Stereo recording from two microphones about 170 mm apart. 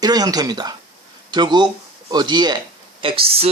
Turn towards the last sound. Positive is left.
turn(degrees=-30)  # may be behind; listen again after turning